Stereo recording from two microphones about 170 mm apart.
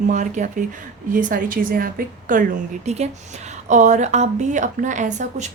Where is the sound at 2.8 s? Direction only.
40° right (ahead or behind).